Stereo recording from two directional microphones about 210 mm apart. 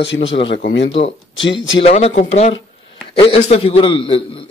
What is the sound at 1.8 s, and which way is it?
Speech, 30° left (ahead or behind).